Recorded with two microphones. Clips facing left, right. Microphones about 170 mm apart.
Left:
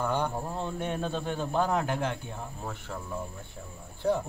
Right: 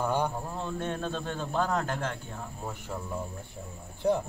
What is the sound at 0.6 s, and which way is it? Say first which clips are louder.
Speech: even; 15° left (ahead or behind).